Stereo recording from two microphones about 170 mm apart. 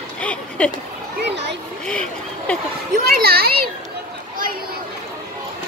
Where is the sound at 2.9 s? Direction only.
65° right (ahead or behind).